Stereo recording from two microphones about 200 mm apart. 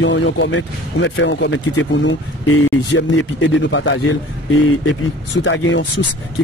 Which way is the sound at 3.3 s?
65° left (ahead or behind).